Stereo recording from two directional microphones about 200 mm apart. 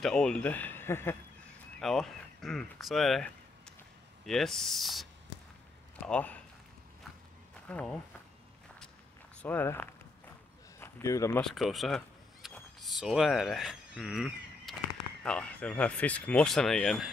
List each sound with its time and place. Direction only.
0.0 s speech: 5° left (ahead or behind)
7.6 s speech: 5° left (ahead or behind)
9.4 s speech: 10° left (ahead or behind)
11.4 s a sound: centre (ahead or behind)
15.2 s speech: 5° left (ahead or behind)